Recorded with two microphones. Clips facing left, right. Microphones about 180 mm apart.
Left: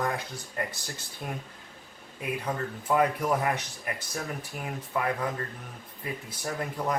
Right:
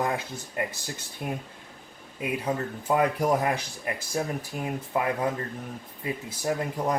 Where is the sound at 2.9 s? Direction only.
30° right (ahead or behind).